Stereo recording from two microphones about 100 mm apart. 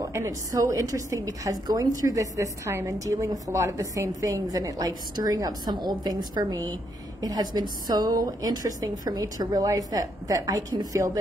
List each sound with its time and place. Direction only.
0.0 s a woman's voice: 30° right (ahead or behind)